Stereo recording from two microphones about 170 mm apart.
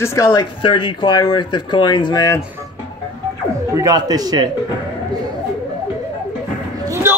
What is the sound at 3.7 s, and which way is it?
Speech, 20° right (ahead or behind).